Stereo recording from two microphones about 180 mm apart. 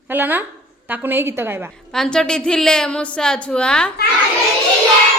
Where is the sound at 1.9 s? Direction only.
Centre (ahead or behind).